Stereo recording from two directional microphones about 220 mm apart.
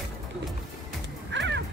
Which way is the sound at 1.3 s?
55° right (ahead or behind).